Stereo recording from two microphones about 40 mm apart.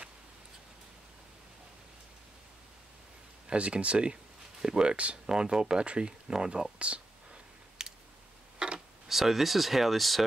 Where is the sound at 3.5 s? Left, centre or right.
Right.